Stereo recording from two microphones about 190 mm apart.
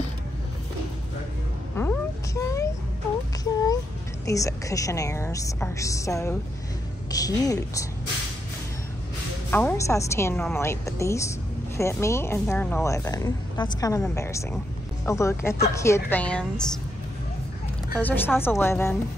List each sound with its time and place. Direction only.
1.8 s a sound: 15° left (ahead or behind)
4.3 s a woman's voice: 15° left (ahead or behind)
9.5 s a woman's voice: 10° left (ahead or behind)
17.9 s a woman's voice: 10° left (ahead or behind)